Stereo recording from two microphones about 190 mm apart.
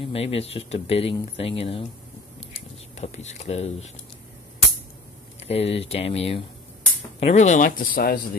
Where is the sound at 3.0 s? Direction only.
35° left (ahead or behind).